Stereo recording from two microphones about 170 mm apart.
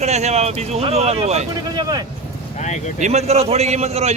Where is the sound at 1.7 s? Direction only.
25° right (ahead or behind).